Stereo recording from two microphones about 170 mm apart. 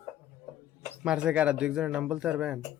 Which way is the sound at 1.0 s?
5° right (ahead or behind).